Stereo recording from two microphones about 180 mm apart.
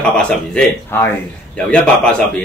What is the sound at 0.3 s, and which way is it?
A man's voice, 5° left (ahead or behind).